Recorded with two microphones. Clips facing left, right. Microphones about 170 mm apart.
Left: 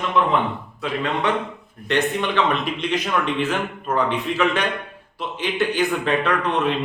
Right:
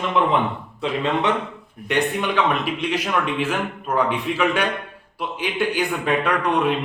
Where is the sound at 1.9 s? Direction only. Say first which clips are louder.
Even; 10° right (ahead or behind).